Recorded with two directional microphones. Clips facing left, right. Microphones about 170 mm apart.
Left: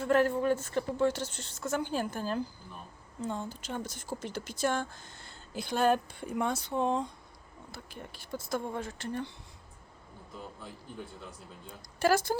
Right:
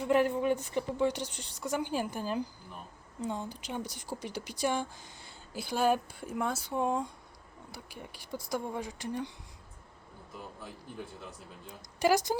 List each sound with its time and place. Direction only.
0.0 s speech: 15° right (ahead or behind)
11.9 s speech: 15° right (ahead or behind)